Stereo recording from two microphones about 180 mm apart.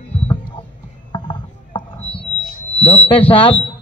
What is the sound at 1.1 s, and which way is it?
Rowboat, 25° left (ahead or behind).